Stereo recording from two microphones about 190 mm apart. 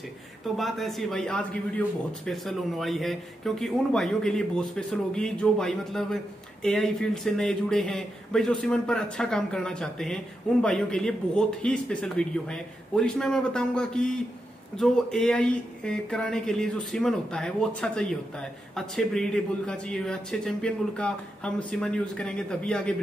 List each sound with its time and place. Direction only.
0.6 s speech: centre (ahead or behind)